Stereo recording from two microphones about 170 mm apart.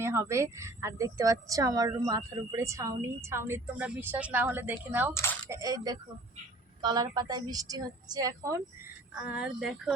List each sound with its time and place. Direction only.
0.0 s speech: 15° right (ahead or behind)
5.1 s speech: 15° left (ahead or behind)
5.5 s a woman's voice: 20° right (ahead or behind)
9.2 s speech: 5° right (ahead or behind)